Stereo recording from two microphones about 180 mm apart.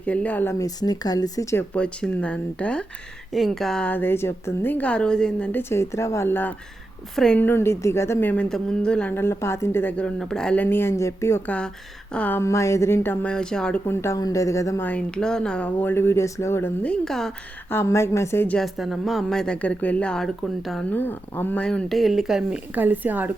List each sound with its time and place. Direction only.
0.0 s speech: 10° left (ahead or behind); by 23.3 s 10° right (ahead or behind)